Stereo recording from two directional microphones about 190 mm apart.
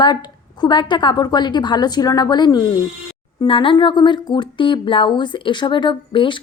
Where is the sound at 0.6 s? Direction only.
25° left (ahead or behind).